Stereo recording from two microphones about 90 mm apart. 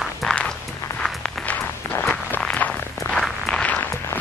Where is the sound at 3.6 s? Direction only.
20° left (ahead or behind).